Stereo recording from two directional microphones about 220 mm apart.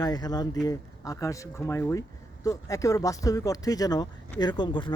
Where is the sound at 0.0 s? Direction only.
20° left (ahead or behind).